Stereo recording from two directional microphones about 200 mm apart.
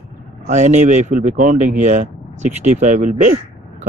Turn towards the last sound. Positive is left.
turn(degrees=-40)  # may be behind; listen again after turning